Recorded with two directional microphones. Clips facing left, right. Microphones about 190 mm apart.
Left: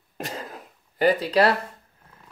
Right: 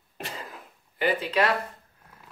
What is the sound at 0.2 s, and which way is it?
Throat clearing, 40° left (ahead or behind).